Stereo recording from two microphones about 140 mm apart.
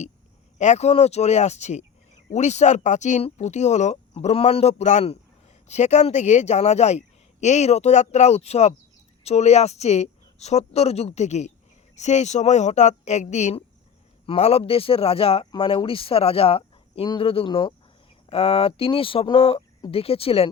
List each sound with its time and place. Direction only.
0.6 s speech: 55° left (ahead or behind); by 17.7 s 35° left (ahead or behind)
18.3 s speech: 45° left (ahead or behind)